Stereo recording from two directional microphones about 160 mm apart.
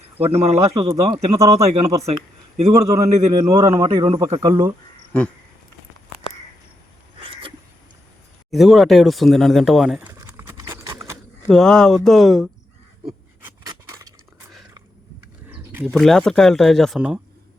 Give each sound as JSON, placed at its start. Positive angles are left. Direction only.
{"t": 0.2, "sound": "speech", "side_deg": -40}
{"t": 1.4, "sound": "speech", "side_deg": -20}
{"t": 2.6, "sound": "a man's voice", "side_deg": -45}
{"t": 3.4, "sound": "speech", "side_deg": -20}
{"t": 3.8, "sound": "speech", "side_deg": -35}
{"t": 4.3, "sound": "speech", "side_deg": -20}
{"t": 7.2, "sound": "a sound", "side_deg": -35}
{"t": 8.4, "sound": "speech", "side_deg": 0}
{"t": 10.4, "sound": "horse", "side_deg": -15}
{"t": 11.4, "sound": "speech", "side_deg": 5}
{"t": 15.4, "sound": "a sound", "side_deg": -15}
{"t": 15.9, "sound": "speech", "side_deg": 5}